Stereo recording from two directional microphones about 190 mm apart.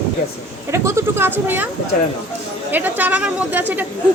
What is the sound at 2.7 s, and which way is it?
Speech, 10° right (ahead or behind).